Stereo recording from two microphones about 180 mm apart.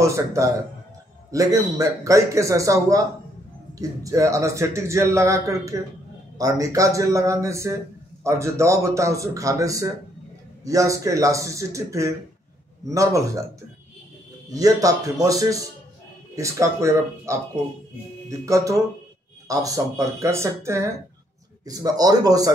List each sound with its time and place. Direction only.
0.0 s a man's voice: 15° right (ahead or behind)
14.5 s a man's voice: 20° right (ahead or behind)